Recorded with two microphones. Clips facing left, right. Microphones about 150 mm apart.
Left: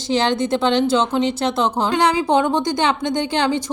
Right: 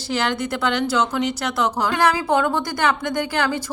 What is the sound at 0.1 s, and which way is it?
Speech, 25° left (ahead or behind).